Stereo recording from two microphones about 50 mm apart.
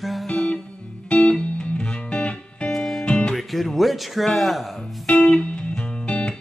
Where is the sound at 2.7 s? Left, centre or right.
Centre.